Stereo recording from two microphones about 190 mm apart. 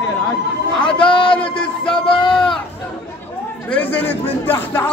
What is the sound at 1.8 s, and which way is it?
Music, 25° left (ahead or behind).